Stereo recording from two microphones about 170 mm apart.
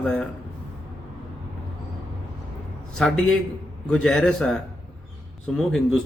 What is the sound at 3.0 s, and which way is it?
A man's voice, 5° left (ahead or behind).